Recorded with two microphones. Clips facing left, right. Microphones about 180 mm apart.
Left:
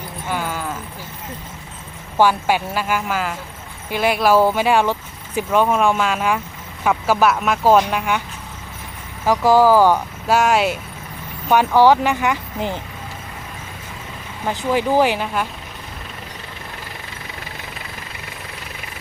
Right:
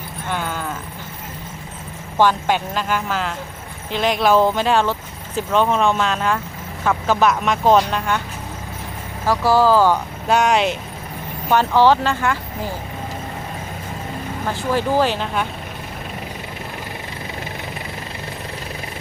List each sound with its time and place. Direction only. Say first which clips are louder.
0.3 s a sound: left 1 dB; 5° left (ahead or behind)
2.1 s speech: left 1 dB; 10° left (ahead or behind)
9.2 s speech: left 2 dB; 15° left (ahead or behind)
14.4 s speech: left 2 dB; 15° left (ahead or behind)